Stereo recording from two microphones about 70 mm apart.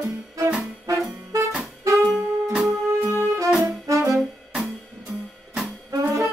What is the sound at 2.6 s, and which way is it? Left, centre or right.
Music, right.